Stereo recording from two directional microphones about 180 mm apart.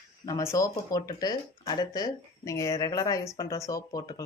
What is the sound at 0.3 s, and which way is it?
Speech, 20° left (ahead or behind).